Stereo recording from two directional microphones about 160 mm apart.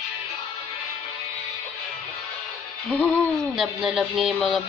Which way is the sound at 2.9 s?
10° left (ahead or behind).